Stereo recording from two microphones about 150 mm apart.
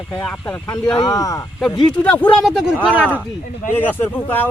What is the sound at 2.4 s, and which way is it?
Speech, centre (ahead or behind).